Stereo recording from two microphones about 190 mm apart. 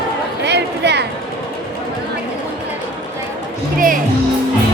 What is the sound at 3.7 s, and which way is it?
Music, 45° right (ahead or behind).